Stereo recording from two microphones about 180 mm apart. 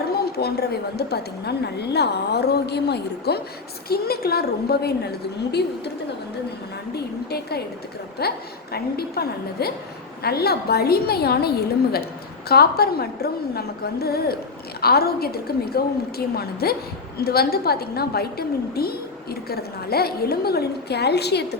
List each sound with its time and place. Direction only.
0.1 s a woman's voice: 60° left (ahead or behind)
6.9 s a woman's voice: 60° left (ahead or behind)